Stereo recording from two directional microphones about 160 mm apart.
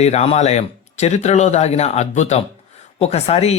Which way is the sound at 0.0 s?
45° left (ahead or behind).